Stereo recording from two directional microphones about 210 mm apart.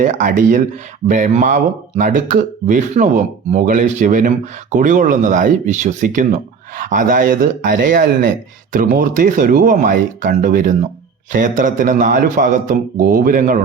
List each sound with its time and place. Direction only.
0.0 s speech: 40° right (ahead or behind)